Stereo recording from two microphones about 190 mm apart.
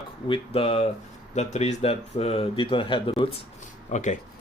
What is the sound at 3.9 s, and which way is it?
Speech, 40° left (ahead or behind).